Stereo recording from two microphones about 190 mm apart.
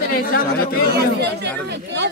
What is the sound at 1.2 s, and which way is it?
Speech, 60° right (ahead or behind).